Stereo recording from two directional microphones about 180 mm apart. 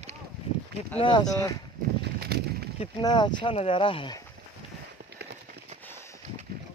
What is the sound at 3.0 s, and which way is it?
Speech, 25° left (ahead or behind).